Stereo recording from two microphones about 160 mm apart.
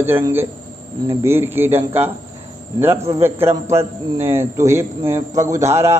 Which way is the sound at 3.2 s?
15° right (ahead or behind).